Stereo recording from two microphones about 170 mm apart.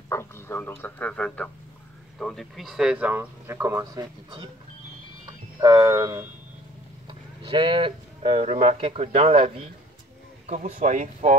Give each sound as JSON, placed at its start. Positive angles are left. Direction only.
{"t": 0.1, "sound": "speech", "side_deg": 15}
{"t": 5.6, "sound": "speech", "side_deg": -20}
{"t": 10.4, "sound": "speech", "side_deg": -45}